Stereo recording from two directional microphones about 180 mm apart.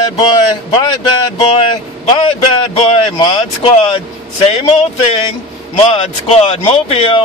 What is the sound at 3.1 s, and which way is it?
Speech, 30° left (ahead or behind).